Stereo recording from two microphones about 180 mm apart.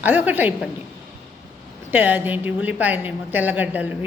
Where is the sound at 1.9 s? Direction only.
10° right (ahead or behind).